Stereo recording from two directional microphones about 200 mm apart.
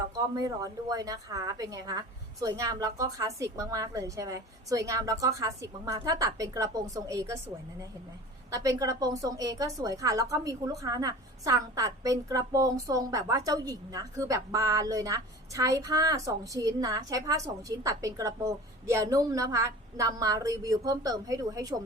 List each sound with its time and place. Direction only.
0.3 s a woman's voice: 20° right (ahead or behind)